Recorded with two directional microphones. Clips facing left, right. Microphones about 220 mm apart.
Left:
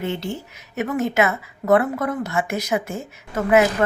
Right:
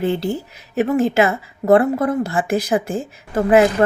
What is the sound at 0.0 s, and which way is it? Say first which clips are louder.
Speech: right 6 dB; 35° right (ahead or behind).